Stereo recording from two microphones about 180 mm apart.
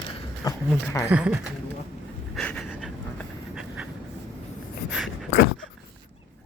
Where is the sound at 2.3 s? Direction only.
5° left (ahead or behind).